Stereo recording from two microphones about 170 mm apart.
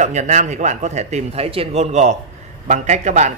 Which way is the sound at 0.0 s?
45° right (ahead or behind).